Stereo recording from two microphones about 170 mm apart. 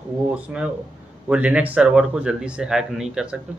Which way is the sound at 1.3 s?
5° right (ahead or behind).